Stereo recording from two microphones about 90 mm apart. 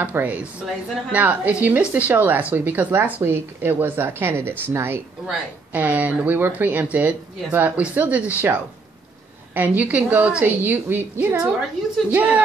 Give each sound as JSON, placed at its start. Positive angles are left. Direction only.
{"t": 0.0, "sound": "speech", "side_deg": -15}
{"t": 5.2, "sound": "speech", "side_deg": -15}